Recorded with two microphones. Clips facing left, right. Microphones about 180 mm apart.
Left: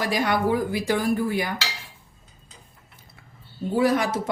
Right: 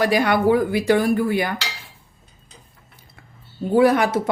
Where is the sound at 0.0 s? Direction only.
65° right (ahead or behind).